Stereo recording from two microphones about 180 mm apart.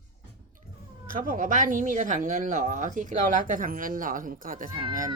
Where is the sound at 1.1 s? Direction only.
50° right (ahead or behind).